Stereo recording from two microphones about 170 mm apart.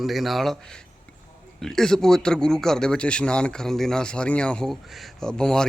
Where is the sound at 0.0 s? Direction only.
Centre (ahead or behind).